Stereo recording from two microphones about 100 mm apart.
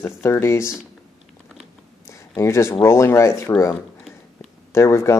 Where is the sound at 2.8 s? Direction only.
30° left (ahead or behind).